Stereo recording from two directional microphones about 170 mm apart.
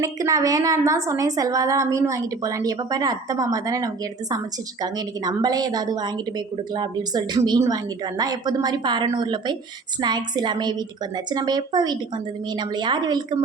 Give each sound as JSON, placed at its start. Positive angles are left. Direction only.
{"t": 0.0, "sound": "a woman's voice", "side_deg": -20}